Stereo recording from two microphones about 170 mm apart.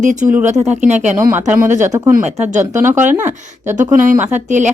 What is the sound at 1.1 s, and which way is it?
Speech, 10° right (ahead or behind).